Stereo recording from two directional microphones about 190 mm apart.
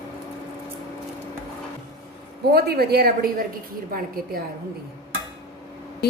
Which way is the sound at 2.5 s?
55° right (ahead or behind).